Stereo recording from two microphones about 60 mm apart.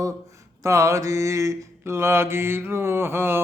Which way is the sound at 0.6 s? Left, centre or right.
Right.